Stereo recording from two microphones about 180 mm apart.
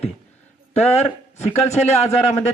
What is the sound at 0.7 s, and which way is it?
Speech, 35° left (ahead or behind).